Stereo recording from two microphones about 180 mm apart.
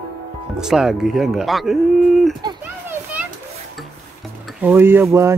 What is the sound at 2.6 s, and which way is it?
Children playing, 10° right (ahead or behind).